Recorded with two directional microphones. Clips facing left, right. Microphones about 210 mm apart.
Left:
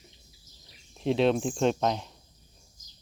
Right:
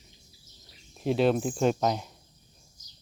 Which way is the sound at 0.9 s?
Centre (ahead or behind).